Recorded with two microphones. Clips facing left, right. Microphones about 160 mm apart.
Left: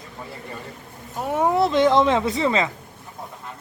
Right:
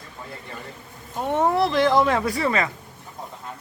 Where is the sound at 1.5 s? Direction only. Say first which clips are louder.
Left 4 dB; 20° left (ahead or behind).